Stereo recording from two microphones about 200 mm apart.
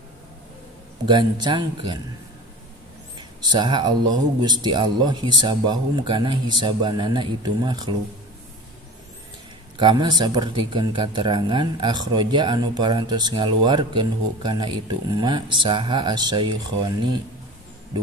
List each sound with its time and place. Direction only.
1.0 s speech: 25° right (ahead or behind)
3.2 s a sound: 20° right (ahead or behind)
4.4 s speech: 20° right (ahead or behind)
9.8 s speech: 20° right (ahead or behind)